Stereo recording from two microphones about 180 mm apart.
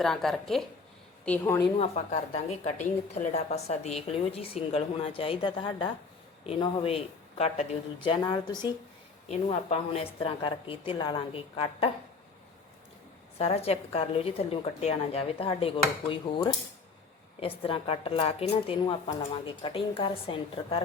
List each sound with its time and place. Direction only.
0.0 s a woman's voice: centre (ahead or behind)
1.8 s a woman's voice: 35° left (ahead or behind)
9.3 s a woman's voice: 35° left (ahead or behind)
13.4 s a woman's voice: 35° left (ahead or behind)